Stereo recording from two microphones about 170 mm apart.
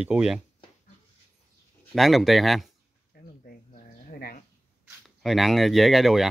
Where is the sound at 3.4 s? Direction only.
60° left (ahead or behind).